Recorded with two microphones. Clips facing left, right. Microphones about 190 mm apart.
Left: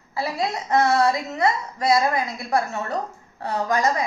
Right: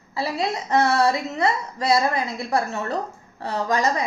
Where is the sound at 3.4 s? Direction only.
30° right (ahead or behind).